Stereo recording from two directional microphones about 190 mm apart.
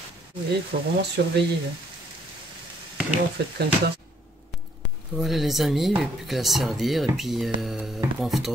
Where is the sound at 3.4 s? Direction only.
60° right (ahead or behind).